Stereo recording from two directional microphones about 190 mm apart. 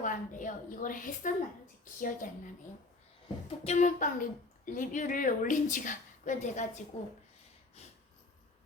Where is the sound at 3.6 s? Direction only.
40° left (ahead or behind).